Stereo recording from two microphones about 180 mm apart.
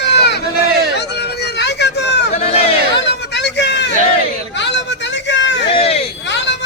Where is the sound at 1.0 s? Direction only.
65° left (ahead or behind).